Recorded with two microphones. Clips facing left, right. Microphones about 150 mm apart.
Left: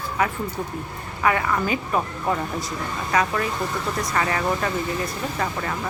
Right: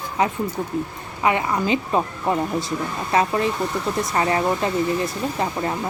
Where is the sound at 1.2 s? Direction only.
20° right (ahead or behind).